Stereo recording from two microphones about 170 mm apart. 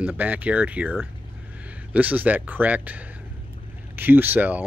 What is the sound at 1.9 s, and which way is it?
Speech, 10° right (ahead or behind).